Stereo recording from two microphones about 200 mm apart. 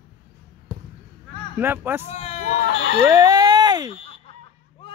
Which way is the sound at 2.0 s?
35° left (ahead or behind).